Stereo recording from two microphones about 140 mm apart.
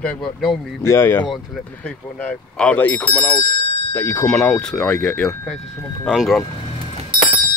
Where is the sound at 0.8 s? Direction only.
20° left (ahead or behind); by 6.4 s centre (ahead or behind).